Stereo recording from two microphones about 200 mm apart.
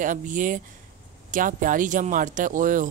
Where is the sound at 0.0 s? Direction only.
40° right (ahead or behind).